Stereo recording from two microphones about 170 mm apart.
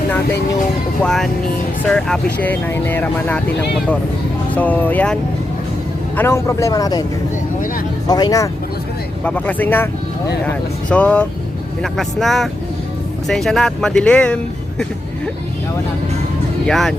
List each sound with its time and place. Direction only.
1.0 s speech: centre (ahead or behind)
4.5 s speech: 10° left (ahead or behind)
6.1 s speech: 15° left (ahead or behind)
8.0 s speech: 25° left (ahead or behind)
9.2 s speech: 10° left (ahead or behind)
16.6 s speech: centre (ahead or behind)